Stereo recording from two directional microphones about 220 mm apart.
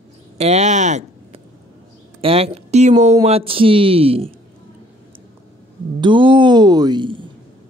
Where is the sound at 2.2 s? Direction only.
25° right (ahead or behind).